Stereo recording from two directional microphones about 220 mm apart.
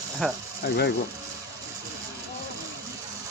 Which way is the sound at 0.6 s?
45° left (ahead or behind).